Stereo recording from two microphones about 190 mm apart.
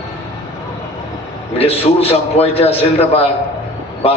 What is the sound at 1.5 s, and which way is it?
A man's voice, 30° left (ahead or behind).